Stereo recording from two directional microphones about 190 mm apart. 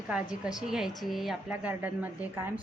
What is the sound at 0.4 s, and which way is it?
A woman's voice, 5° right (ahead or behind).